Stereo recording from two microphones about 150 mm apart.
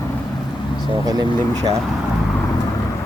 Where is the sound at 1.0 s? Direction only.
25° right (ahead or behind).